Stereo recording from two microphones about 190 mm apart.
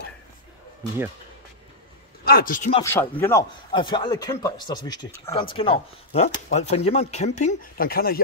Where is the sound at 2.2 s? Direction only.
50° left (ahead or behind).